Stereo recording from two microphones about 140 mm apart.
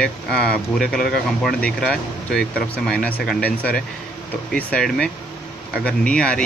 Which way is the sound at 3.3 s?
90° left.